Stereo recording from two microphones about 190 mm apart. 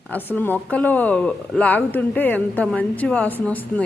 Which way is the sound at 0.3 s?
10° left (ahead or behind).